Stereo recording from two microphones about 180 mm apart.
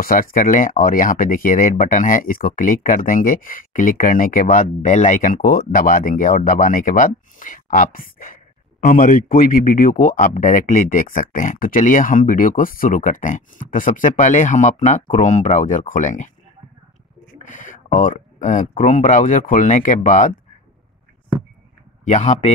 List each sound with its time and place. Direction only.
0.0 s speech: 50° left (ahead or behind)
17.4 s speech: 45° left (ahead or behind)
22.0 s speech: 40° left (ahead or behind)